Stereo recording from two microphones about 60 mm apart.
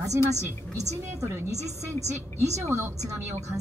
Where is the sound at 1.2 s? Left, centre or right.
Right.